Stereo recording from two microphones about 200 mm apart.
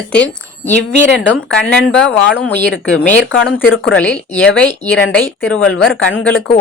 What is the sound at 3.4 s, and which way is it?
Speech, 75° left (ahead or behind).